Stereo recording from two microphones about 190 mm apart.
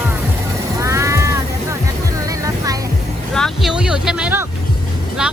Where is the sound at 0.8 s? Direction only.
15° right (ahead or behind).